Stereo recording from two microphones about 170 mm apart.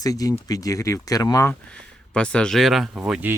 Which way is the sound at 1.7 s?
5° left (ahead or behind).